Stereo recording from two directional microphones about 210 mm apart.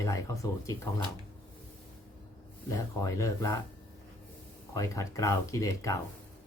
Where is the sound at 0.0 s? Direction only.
15° left (ahead or behind).